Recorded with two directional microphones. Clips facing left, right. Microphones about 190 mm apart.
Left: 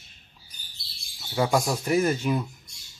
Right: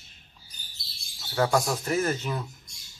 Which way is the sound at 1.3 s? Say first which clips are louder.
Left 1 dB; 10° left (ahead or behind).